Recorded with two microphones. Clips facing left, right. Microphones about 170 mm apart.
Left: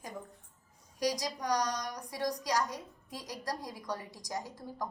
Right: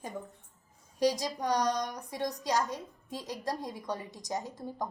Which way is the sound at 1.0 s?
25° right (ahead or behind).